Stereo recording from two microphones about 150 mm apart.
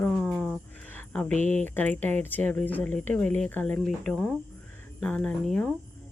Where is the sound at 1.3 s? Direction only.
50° right (ahead or behind).